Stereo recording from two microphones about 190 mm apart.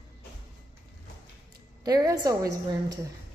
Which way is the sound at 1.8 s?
20° right (ahead or behind).